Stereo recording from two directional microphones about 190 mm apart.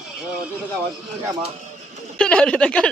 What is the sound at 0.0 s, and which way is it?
Vehicle, 5° right (ahead or behind).